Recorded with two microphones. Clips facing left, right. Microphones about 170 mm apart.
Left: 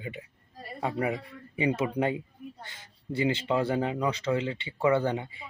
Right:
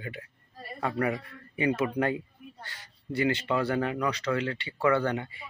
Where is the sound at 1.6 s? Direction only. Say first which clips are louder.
Even; 20° left (ahead or behind).